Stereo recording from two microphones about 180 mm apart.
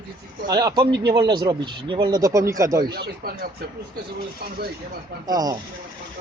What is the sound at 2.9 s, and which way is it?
Speech, 60° right (ahead or behind).